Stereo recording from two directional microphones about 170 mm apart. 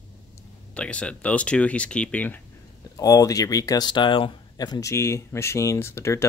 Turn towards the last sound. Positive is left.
turn(degrees=15)  # may be behind; listen again after turning